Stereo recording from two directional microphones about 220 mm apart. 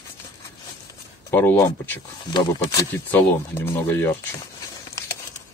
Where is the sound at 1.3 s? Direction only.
10° left (ahead or behind).